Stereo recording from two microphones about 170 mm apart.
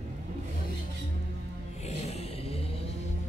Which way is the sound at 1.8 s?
40° left (ahead or behind).